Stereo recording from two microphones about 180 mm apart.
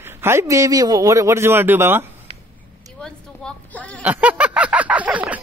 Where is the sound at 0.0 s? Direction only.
15° right (ahead or behind).